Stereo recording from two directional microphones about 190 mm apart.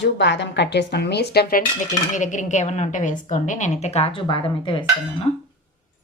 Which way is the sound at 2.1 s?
40° left (ahead or behind).